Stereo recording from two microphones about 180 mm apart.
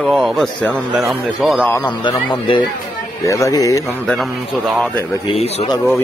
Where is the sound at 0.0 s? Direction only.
Centre (ahead or behind).